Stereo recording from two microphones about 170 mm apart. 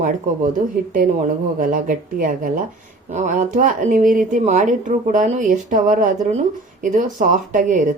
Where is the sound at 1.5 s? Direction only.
50° right (ahead or behind).